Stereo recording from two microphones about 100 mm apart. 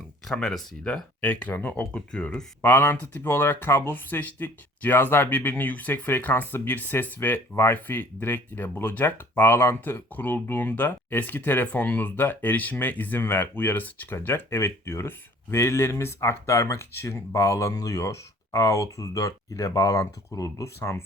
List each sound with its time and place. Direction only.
0.3 s speech: 5° left (ahead or behind)
1.2 s speech: 15° left (ahead or behind)
2.6 s speech: 20° left (ahead or behind)